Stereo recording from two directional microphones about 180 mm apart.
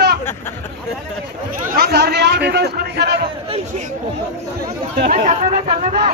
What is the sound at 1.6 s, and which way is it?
A man's voice, 60° right (ahead or behind).